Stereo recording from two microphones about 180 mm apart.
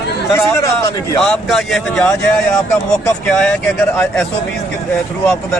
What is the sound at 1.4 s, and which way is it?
Speech, centre (ahead or behind).